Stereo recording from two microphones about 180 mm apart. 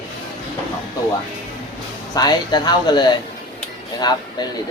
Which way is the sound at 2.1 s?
20° left (ahead or behind).